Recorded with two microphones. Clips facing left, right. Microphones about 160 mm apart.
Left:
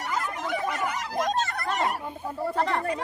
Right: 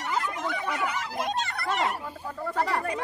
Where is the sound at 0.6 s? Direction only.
40° left (ahead or behind).